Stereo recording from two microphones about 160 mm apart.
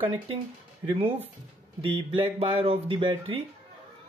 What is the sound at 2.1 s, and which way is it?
Speech, 35° right (ahead or behind).